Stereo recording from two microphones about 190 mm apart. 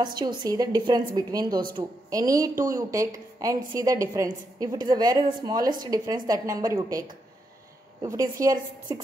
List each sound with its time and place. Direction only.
0.0 s a woman's voice: 25° right (ahead or behind)